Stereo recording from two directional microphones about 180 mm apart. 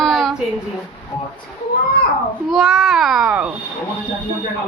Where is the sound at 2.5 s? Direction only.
Centre (ahead or behind).